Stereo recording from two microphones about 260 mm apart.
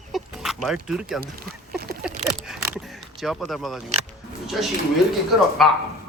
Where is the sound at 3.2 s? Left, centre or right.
Centre.